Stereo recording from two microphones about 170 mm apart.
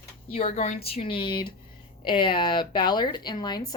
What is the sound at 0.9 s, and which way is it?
A woman's voice, 30° left (ahead or behind).